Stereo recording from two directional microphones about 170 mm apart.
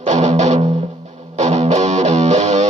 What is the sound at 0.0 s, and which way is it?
Music, 45° right (ahead or behind).